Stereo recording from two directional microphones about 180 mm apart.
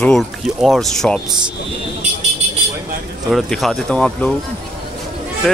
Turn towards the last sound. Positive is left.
turn(degrees=0)  # may be behind; listen again after turning